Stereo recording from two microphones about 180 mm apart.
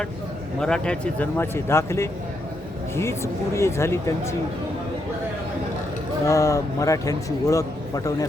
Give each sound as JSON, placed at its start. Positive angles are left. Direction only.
{"t": 0.6, "sound": "speech", "side_deg": 5}
{"t": 6.2, "sound": "a man's voice", "side_deg": 20}